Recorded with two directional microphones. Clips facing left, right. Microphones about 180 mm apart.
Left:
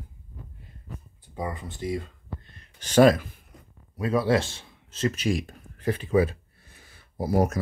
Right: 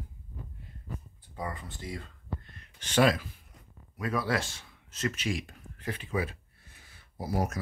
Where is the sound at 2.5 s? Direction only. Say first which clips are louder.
Left 8 dB; 35° left (ahead or behind).